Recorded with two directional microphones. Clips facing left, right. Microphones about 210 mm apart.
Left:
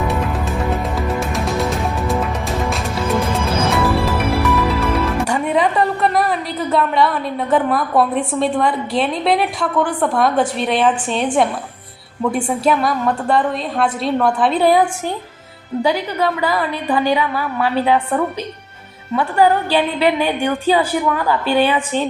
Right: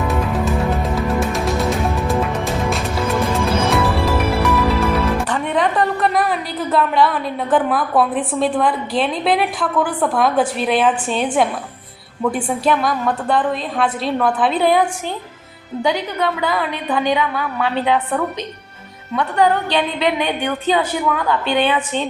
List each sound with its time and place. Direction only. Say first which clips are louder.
0.1 s music: right 2 dB; centre (ahead or behind)
5.2 s a sound: left 2 dB; 10° left (ahead or behind)
8.3 s a woman's voice: even; centre (ahead or behind)
12.3 s a woman's voice: left 2 dB; 5° right (ahead or behind)
15.8 s a woman's voice: left 1 dB; 5° left (ahead or behind)